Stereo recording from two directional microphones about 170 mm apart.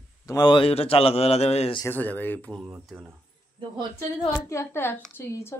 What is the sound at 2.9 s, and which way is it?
Speech, 10° right (ahead or behind).